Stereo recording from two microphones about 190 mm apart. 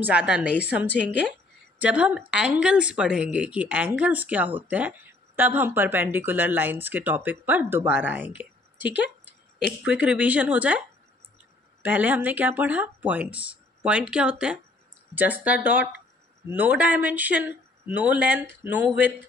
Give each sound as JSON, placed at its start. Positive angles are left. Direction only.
{"t": 0.0, "sound": "speech", "side_deg": -5}
{"t": 0.9, "sound": "speech", "side_deg": 65}
{"t": 1.8, "sound": "speech", "side_deg": -5}
{"t": 11.8, "sound": "speech", "side_deg": -10}